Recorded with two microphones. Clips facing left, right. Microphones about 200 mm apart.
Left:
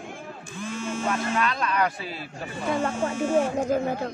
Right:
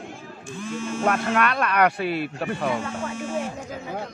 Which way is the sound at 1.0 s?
65° right (ahead or behind).